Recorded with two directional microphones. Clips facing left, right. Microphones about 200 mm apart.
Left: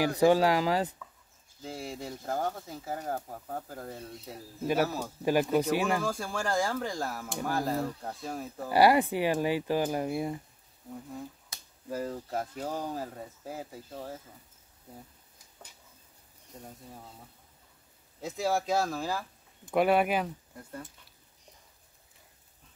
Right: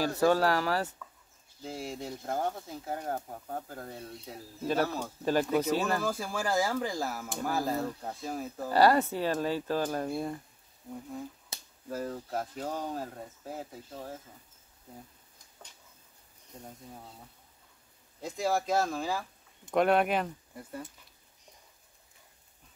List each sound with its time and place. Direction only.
0.0 s speech: 15° left (ahead or behind)
1.6 s speech: centre (ahead or behind)
5.9 s speech: 5° right (ahead or behind)
8.6 s speech: 10° left (ahead or behind)
11.5 s finger snapping: 25° right (ahead or behind)
11.9 s speech: 5° left (ahead or behind)
18.2 s speech: centre (ahead or behind)